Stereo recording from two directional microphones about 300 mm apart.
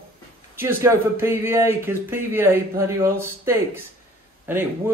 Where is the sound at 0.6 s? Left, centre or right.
Centre.